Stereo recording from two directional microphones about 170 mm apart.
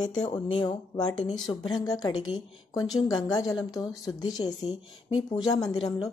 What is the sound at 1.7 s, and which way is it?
Speech, 25° left (ahead or behind).